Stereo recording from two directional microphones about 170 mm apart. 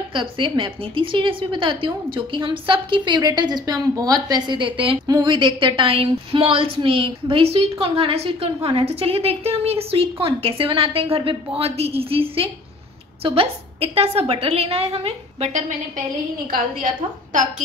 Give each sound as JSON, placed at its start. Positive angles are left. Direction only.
{"t": 0.1, "sound": "a woman's voice", "side_deg": -30}
{"t": 16.8, "sound": "a woman's voice", "side_deg": -50}